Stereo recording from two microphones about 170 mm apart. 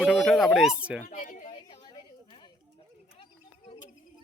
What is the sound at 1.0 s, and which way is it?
Speech, 50° left (ahead or behind).